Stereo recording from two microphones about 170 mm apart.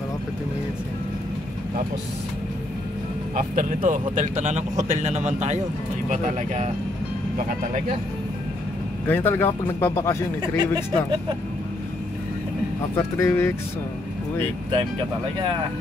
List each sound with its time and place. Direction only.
3.3 s speech: 50° right (ahead or behind)
9.0 s speech: 10° left (ahead or behind)
12.9 s speech: 15° left (ahead or behind)